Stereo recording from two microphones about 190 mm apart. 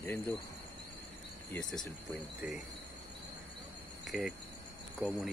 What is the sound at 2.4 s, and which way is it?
Speech, 5° right (ahead or behind).